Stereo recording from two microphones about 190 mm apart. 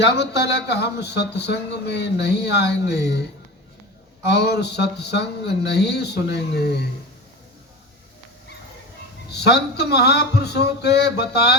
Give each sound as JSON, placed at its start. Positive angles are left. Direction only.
{"t": 0.0, "sound": "a man's voice", "side_deg": 60}
{"t": 4.3, "sound": "a man's voice", "side_deg": 60}
{"t": 9.3, "sound": "a man's voice", "side_deg": 60}